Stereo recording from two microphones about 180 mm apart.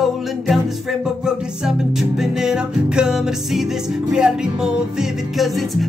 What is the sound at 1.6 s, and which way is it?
Music, centre (ahead or behind).